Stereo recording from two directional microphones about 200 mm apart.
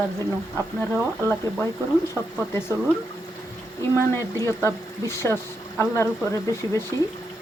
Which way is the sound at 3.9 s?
10° left (ahead or behind).